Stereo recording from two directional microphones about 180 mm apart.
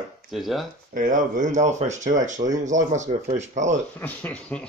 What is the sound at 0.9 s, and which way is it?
Speech, 45° right (ahead or behind).